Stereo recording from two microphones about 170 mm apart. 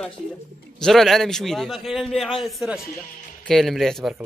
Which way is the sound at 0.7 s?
Centre (ahead or behind).